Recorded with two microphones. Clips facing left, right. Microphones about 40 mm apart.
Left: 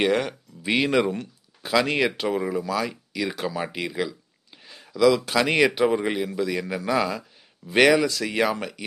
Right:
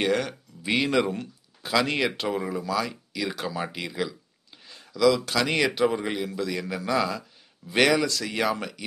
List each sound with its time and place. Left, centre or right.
0.0 s speech: centre